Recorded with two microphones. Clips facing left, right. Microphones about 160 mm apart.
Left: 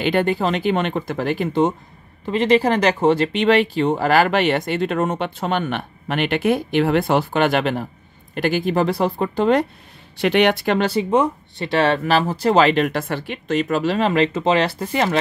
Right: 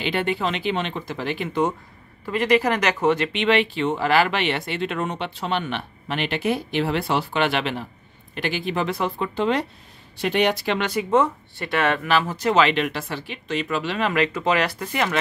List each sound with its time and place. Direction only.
0.0 s speech: 45° left (ahead or behind)
1.5 s speech: 25° left (ahead or behind); by 9.7 s 45° left (ahead or behind)
10.1 s speech: 75° left (ahead or behind); by 10.8 s 55° left (ahead or behind)
10.8 s speech: 30° left (ahead or behind)
11.1 s speech: 15° left (ahead or behind); by 15.1 s 30° left (ahead or behind)